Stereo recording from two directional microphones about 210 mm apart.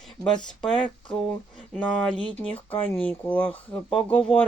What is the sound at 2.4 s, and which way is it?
Speech, 10° left (ahead or behind).